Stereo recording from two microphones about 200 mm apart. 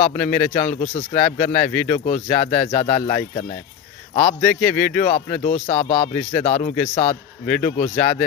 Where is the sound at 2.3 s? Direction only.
20° left (ahead or behind).